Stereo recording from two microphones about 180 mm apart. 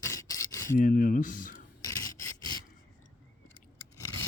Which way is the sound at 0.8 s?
45° left (ahead or behind).